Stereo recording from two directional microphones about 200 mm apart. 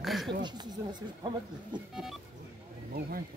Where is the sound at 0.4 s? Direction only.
20° right (ahead or behind).